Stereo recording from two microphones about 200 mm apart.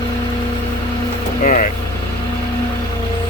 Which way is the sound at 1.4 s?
40° left (ahead or behind).